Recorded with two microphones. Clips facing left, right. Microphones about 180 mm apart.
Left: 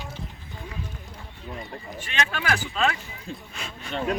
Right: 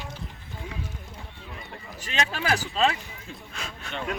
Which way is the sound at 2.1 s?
35° right (ahead or behind).